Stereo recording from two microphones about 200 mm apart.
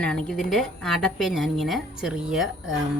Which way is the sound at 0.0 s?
5° left (ahead or behind).